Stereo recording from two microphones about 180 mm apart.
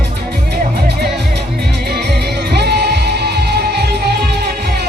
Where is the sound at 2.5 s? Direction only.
65° right (ahead or behind).